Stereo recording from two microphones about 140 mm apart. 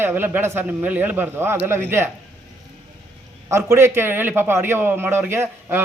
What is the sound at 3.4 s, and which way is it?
Speech, 20° right (ahead or behind).